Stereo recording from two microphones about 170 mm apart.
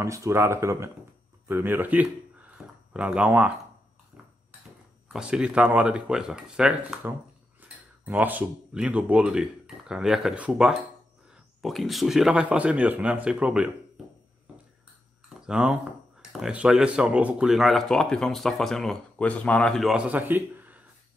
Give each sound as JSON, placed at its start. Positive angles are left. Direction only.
{"t": 0.0, "sound": "speech", "side_deg": -15}
{"t": 2.5, "sound": "a sound", "side_deg": -5}
{"t": 5.0, "sound": "speech", "side_deg": -5}
{"t": 15.4, "sound": "speech", "side_deg": -5}